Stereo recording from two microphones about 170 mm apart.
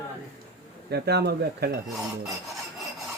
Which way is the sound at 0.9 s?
75° right (ahead or behind).